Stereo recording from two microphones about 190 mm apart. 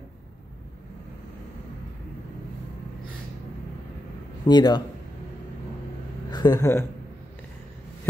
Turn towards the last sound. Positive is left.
turn(degrees=15)  # may be behind; listen again after turning